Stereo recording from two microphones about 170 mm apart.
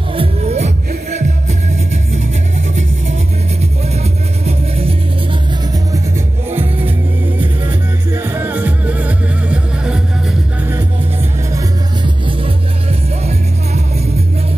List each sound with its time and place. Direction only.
0.1 s music: 30° right (ahead or behind)
4.5 s music: 35° right (ahead or behind)
7.3 s music: 10° right (ahead or behind)
11.5 s music: 25° right (ahead or behind)